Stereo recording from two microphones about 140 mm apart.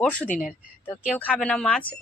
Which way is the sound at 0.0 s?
10° left (ahead or behind).